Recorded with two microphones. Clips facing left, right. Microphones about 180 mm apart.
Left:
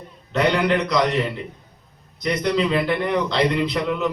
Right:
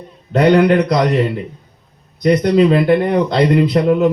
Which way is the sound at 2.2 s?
50° right (ahead or behind).